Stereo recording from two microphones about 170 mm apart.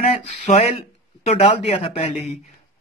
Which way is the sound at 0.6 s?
35° left (ahead or behind).